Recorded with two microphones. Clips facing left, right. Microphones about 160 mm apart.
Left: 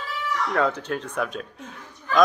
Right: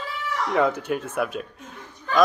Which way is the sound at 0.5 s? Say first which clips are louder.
Right 3 dB; 10° right (ahead or behind).